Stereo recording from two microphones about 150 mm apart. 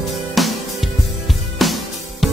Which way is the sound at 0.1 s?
Centre (ahead or behind).